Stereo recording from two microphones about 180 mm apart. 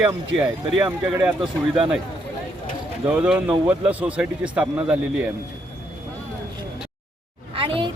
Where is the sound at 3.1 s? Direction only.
5° right (ahead or behind).